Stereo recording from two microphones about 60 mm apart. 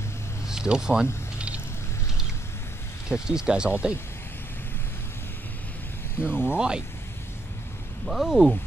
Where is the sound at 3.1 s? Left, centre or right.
Centre.